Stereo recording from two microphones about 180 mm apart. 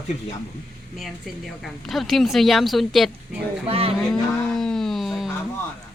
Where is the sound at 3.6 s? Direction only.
30° right (ahead or behind).